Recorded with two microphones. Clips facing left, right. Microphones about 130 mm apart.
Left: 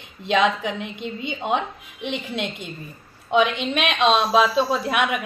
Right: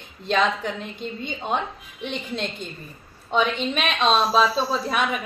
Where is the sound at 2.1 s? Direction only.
10° left (ahead or behind).